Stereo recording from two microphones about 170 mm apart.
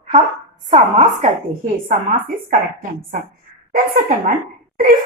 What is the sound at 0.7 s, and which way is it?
Speech, 45° right (ahead or behind).